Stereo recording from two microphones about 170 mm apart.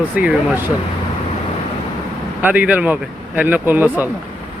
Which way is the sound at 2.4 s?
10° right (ahead or behind).